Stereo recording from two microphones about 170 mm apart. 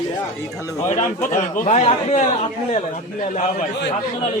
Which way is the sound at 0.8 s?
45° left (ahead or behind).